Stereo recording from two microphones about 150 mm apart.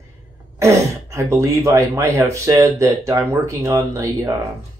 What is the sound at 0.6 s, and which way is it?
Speech, 20° right (ahead or behind).